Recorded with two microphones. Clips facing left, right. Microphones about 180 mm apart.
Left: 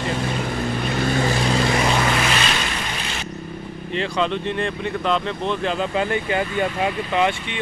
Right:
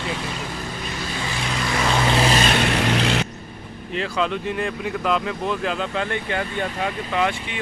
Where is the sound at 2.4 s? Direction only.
60° right (ahead or behind); by 3.3 s 75° right (ahead or behind).